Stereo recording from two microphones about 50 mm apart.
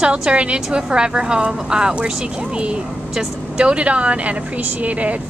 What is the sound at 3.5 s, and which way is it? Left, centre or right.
A woman's voice, right.